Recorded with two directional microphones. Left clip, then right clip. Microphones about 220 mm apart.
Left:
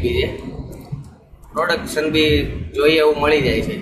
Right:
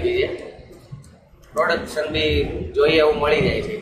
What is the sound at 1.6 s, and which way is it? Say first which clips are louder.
A man's voice: left 1 dB; 20° left (ahead or behind).